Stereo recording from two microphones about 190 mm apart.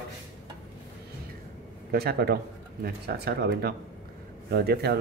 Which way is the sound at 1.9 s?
55° right (ahead or behind).